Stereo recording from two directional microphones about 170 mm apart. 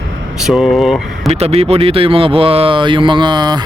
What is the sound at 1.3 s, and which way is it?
Speech, 40° right (ahead or behind).